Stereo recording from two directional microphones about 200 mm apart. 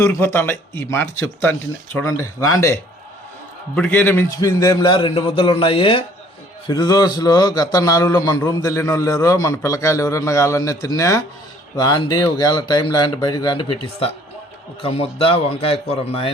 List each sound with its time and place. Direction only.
0.0 s a man's voice: 15° left (ahead or behind)
3.8 s a man's voice: 10° left (ahead or behind); by 16.3 s 30° left (ahead or behind)